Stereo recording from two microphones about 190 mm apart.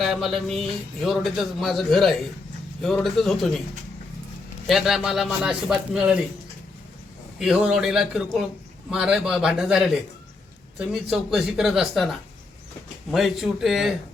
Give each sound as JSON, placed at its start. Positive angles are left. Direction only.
{"t": 0.0, "sound": "speech", "side_deg": 0}
{"t": 4.7, "sound": "speech", "side_deg": 0}
{"t": 7.3, "sound": "speech", "side_deg": -5}